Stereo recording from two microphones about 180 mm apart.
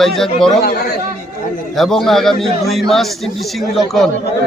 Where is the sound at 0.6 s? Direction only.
60° left (ahead or behind).